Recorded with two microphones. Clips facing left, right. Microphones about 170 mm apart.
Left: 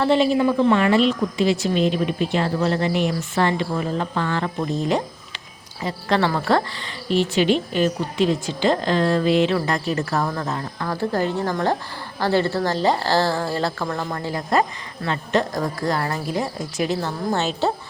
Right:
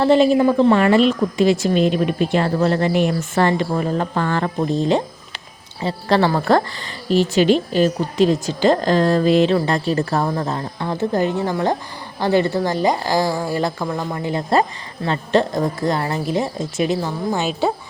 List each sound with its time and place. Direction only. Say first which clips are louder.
0.0 s a woman's voice: right 4 dB; 40° right (ahead or behind)
4.7 s a woman's voice: right 4 dB; 30° right (ahead or behind)
15.0 s speech: right 4 dB; 30° right (ahead or behind)
17.0 s a woman's voice: right 2 dB; 10° right (ahead or behind)